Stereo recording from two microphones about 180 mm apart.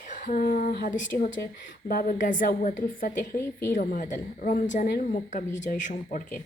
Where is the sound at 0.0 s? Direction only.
45° left (ahead or behind).